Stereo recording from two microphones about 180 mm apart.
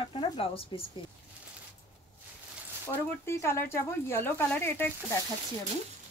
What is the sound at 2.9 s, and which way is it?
Speech, 15° left (ahead or behind).